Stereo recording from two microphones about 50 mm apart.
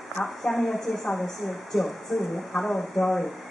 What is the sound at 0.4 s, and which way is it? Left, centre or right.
A woman's voice, centre.